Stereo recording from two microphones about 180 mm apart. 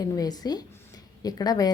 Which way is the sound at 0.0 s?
20° left (ahead or behind).